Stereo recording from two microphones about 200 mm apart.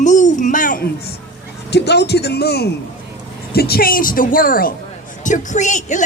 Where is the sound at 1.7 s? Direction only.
55° left (ahead or behind).